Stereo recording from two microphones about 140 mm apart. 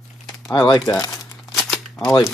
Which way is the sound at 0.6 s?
25° left (ahead or behind).